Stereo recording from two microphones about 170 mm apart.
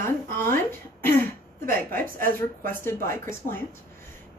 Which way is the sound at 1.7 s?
10° left (ahead or behind).